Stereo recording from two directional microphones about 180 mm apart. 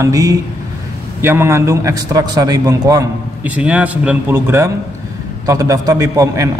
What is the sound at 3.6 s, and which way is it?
Speech, 5° right (ahead or behind).